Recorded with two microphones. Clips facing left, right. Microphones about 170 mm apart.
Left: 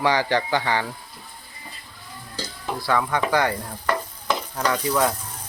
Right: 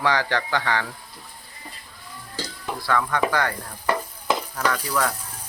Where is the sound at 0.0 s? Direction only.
10° left (ahead or behind).